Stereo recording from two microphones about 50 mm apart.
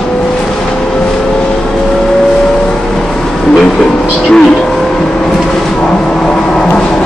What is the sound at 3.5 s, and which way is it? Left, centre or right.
Vehicle, centre.